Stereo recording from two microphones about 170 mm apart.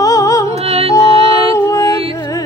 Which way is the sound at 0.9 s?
20° left (ahead or behind).